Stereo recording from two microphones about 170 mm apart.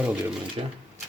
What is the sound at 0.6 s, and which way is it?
Speech, 30° right (ahead or behind).